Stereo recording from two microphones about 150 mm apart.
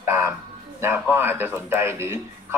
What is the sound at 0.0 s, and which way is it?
A man's voice, 20° right (ahead or behind).